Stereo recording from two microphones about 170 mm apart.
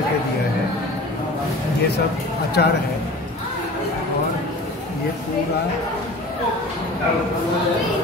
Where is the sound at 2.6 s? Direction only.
70° left (ahead or behind).